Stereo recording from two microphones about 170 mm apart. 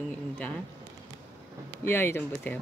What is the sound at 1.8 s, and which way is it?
Speech, 15° left (ahead or behind).